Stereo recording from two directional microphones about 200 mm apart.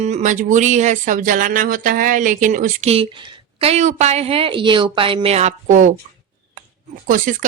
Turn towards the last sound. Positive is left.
turn(degrees=-40)  # may be behind; listen again after turning